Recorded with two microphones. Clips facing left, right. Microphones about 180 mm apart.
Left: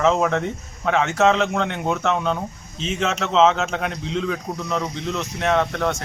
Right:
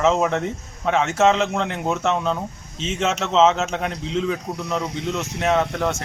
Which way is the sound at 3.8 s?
30° right (ahead or behind).